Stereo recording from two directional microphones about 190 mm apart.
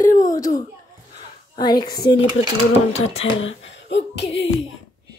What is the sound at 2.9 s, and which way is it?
Speech, 30° left (ahead or behind).